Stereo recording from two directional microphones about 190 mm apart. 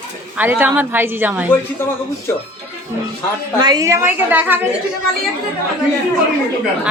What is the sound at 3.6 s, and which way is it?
A woman's voice, 20° right (ahead or behind).